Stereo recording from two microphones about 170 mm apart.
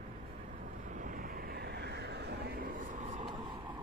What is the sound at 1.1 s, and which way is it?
Vehicle, 55° right (ahead or behind).